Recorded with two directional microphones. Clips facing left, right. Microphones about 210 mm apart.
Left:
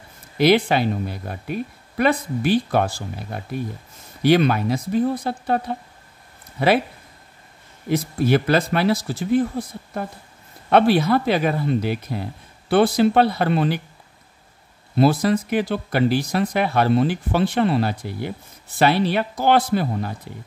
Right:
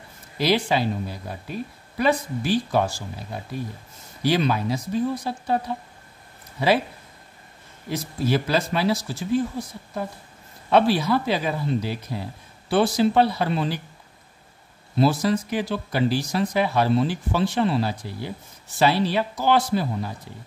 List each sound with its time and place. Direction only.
0.4 s speech: 60° left (ahead or behind)
7.9 s speech: 60° left (ahead or behind)
15.0 s speech: 55° left (ahead or behind)